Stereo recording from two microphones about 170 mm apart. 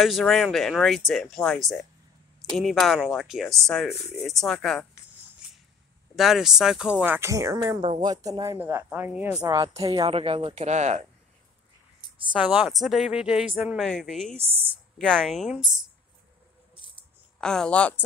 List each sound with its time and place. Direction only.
0.0 s speech: centre (ahead or behind)
6.1 s speech: centre (ahead or behind)
9.4 s speech: 20° right (ahead or behind)
9.8 s speech: 35° right (ahead or behind)
12.3 s speech: 5° right (ahead or behind)
17.4 s speech: 5° left (ahead or behind)